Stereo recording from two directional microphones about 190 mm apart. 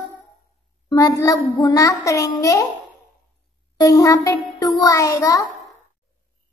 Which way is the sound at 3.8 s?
15° left (ahead or behind).